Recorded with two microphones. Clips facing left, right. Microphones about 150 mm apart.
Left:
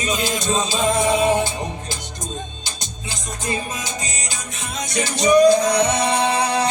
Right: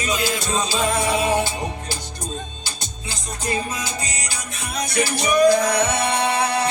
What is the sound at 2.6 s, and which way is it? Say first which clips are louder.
Music: even; 20° left (ahead or behind).